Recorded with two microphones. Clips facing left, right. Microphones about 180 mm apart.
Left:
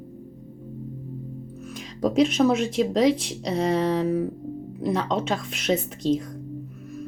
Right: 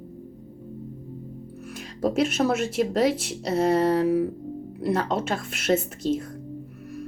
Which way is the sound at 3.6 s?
50° right (ahead or behind).